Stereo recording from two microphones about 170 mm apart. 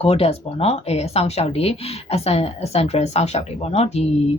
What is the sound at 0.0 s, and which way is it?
A woman's voice, 35° left (ahead or behind).